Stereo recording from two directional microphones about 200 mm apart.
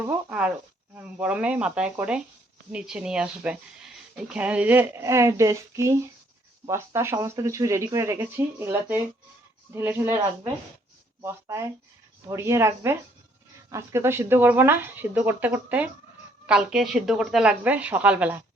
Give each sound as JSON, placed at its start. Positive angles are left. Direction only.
{"t": 0.0, "sound": "a woman's voice", "side_deg": -5}